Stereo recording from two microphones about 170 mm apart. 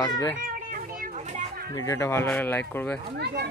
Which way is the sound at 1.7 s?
20° left (ahead or behind).